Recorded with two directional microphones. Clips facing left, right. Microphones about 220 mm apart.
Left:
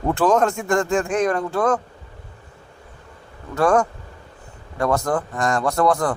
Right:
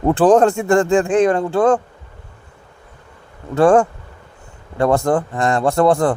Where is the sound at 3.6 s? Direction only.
30° right (ahead or behind).